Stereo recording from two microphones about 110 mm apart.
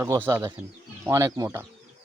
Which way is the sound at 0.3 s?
25° right (ahead or behind).